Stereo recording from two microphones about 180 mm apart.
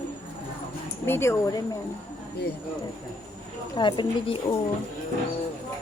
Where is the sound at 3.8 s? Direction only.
25° left (ahead or behind).